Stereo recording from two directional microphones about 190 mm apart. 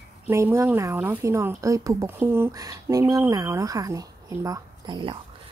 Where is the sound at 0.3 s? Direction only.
15° right (ahead or behind).